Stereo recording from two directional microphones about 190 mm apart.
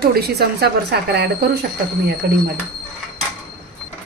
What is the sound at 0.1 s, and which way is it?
Speech, 55° right (ahead or behind).